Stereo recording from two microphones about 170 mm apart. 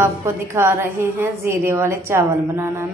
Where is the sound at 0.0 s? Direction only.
15° right (ahead or behind).